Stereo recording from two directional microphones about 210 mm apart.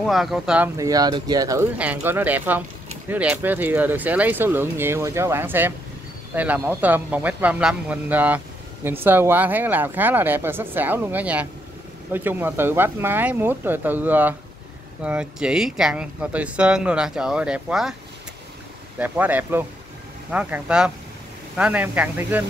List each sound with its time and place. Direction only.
0.0 s speech: centre (ahead or behind)
0.7 s speech: 15° right (ahead or behind)
18.9 s speech: 10° right (ahead or behind)